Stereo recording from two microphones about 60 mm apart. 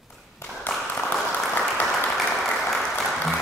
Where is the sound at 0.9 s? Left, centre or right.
Left.